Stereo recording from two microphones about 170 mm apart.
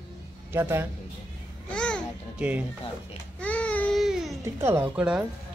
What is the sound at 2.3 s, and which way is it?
Speech, 10° right (ahead or behind).